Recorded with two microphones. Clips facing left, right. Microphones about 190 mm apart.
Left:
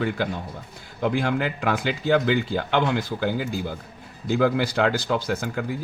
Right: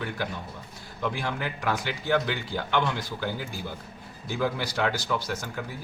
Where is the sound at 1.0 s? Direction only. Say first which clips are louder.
Left 7 dB; 55° left (ahead or behind).